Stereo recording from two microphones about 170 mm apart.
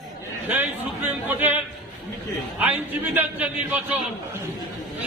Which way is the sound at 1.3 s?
10° right (ahead or behind).